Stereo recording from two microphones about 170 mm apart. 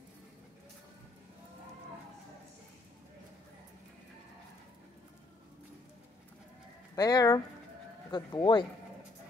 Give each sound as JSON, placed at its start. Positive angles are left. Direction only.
{"t": 7.0, "sound": "speech", "side_deg": 20}